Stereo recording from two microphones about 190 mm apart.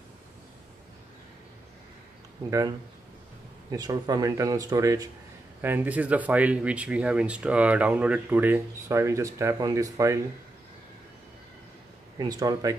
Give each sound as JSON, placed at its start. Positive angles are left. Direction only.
{"t": 3.7, "sound": "speech", "side_deg": -20}
{"t": 12.2, "sound": "speech", "side_deg": -20}